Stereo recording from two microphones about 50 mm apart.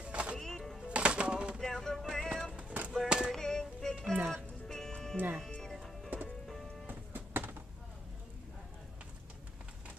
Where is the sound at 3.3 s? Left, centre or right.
Centre.